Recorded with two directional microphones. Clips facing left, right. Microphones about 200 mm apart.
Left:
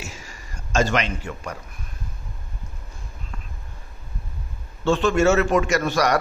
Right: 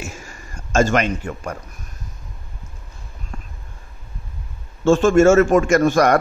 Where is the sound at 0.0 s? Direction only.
50° right (ahead or behind).